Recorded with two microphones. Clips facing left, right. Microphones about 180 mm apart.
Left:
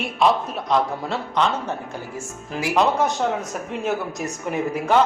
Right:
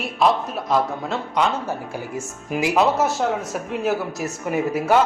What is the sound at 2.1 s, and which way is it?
Speech, 20° right (ahead or behind).